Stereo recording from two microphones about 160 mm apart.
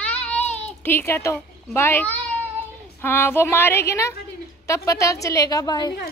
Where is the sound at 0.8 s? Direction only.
15° left (ahead or behind).